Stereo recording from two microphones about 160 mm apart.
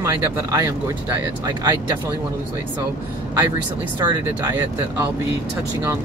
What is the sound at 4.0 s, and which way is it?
Speech, 15° right (ahead or behind).